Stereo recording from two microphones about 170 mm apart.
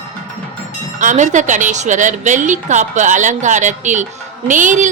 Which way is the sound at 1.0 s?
45° right (ahead or behind).